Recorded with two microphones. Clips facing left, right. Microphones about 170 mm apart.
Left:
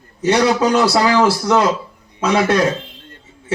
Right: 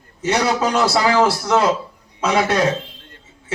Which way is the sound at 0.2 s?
35° left (ahead or behind).